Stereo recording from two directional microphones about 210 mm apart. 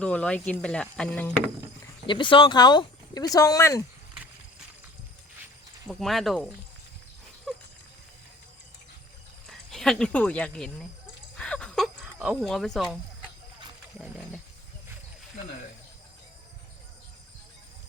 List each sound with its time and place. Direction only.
0.0 s speech: 5° left (ahead or behind)
2.0 s speech: 20° left (ahead or behind)
5.9 s speech: centre (ahead or behind)
7.5 s dog: centre (ahead or behind)
9.5 s speech: centre (ahead or behind)
11.3 s a sound: 5° left (ahead or behind)